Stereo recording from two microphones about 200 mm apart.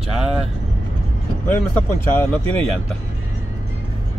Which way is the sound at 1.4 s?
10° left (ahead or behind).